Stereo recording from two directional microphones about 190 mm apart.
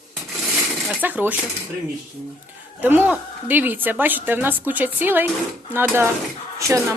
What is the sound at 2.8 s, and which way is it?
A woman's voice, 10° right (ahead or behind).